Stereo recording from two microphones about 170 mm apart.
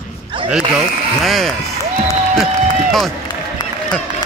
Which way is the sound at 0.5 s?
5° right (ahead or behind).